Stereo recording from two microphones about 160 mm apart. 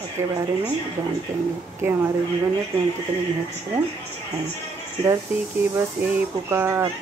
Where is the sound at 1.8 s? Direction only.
15° right (ahead or behind).